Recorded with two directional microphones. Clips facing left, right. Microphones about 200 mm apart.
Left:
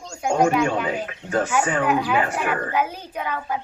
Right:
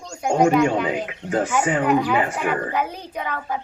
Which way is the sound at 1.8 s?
5° left (ahead or behind).